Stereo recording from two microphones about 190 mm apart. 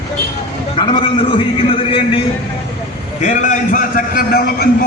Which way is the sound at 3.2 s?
40° left (ahead or behind).